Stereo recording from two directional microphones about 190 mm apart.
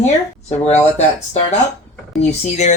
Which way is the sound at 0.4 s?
35° left (ahead or behind).